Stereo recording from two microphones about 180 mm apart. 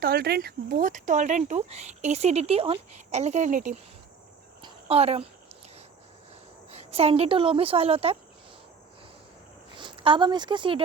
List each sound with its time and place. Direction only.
0.0 s speech: 60° right (ahead or behind); by 3.8 s 45° right (ahead or behind)
4.6 s a sound: 35° right (ahead or behind)
6.7 s speech: 35° right (ahead or behind)
9.7 s a woman's voice: 25° right (ahead or behind)